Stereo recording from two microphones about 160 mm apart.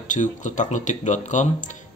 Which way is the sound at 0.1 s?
50° left (ahead or behind).